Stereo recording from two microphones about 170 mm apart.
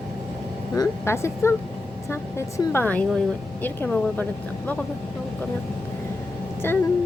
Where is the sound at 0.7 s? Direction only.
20° left (ahead or behind).